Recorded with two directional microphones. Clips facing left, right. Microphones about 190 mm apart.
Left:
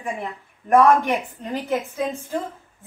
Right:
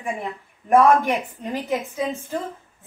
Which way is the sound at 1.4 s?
Centre (ahead or behind).